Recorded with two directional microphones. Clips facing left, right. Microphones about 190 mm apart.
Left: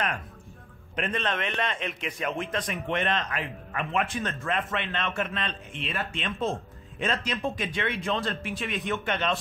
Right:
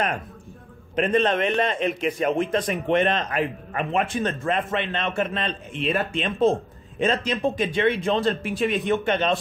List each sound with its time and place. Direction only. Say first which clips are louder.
0.9 s a man's voice: right 9 dB; 35° right (ahead or behind)